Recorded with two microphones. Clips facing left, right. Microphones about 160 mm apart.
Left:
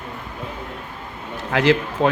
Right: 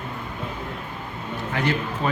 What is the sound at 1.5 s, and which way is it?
Speech, 85° left.